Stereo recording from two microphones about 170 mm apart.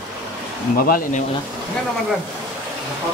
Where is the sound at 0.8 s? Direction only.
60° left (ahead or behind).